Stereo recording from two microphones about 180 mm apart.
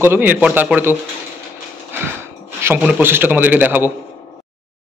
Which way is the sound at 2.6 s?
10° right (ahead or behind).